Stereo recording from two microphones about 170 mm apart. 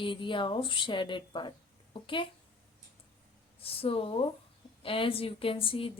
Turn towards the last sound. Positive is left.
turn(degrees=30)  # may be behind; listen again after turning